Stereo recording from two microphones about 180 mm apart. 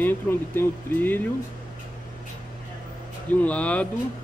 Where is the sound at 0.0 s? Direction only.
10° left (ahead or behind).